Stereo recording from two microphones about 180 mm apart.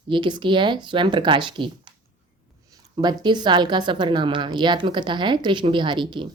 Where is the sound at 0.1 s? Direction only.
25° right (ahead or behind).